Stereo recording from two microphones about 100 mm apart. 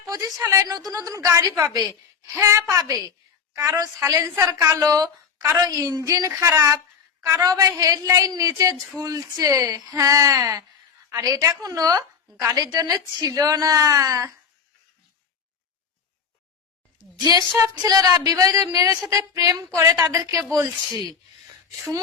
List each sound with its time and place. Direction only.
0.0 s a woman's voice: 35° right (ahead or behind)
17.8 s a woman's voice: 35° right (ahead or behind)